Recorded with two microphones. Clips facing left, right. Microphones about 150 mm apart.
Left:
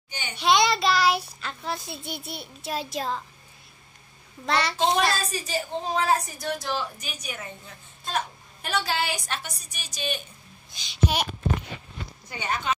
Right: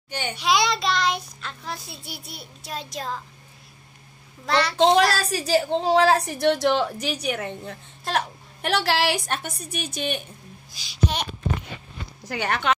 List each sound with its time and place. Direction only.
0.1 s a woman's voice: 60° right (ahead or behind)
0.4 s child singing: centre (ahead or behind)
4.5 s child singing: centre (ahead or behind)
4.7 s a woman's voice: 70° right (ahead or behind)
9.6 s a woman's voice: 60° right (ahead or behind)
10.7 s child singing: centre (ahead or behind)
12.3 s a woman's voice: 75° right (ahead or behind)